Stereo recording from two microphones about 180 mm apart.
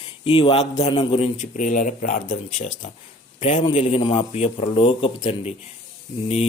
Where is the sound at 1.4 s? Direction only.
45° left (ahead or behind).